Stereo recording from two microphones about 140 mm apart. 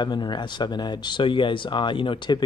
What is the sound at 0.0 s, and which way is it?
Speech, 30° left (ahead or behind).